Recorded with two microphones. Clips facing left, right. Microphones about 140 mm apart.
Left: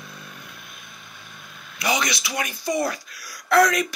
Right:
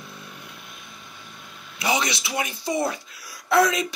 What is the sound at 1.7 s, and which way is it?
Speech, 25° right (ahead or behind).